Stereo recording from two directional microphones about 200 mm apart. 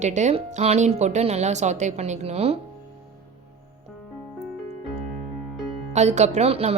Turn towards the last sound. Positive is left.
turn(degrees=-30)  # may be behind; listen again after turning